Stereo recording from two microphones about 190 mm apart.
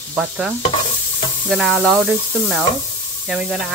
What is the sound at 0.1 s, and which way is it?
Speech, 5° right (ahead or behind).